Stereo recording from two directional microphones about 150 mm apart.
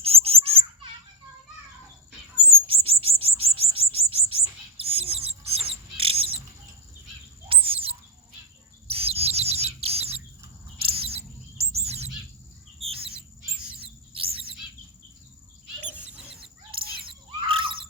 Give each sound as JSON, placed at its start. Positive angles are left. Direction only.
{"t": 0.0, "sound": "a sound", "side_deg": -40}
{"t": 2.5, "sound": "bird", "side_deg": -40}
{"t": 4.8, "sound": "rodents", "side_deg": -40}
{"t": 5.5, "sound": "bird", "side_deg": -40}
{"t": 7.4, "sound": "bird", "side_deg": -35}
{"t": 13.8, "sound": "chirp", "side_deg": -40}
{"t": 16.0, "sound": "chicken", "side_deg": -5}
{"t": 16.7, "sound": "chirp", "side_deg": -35}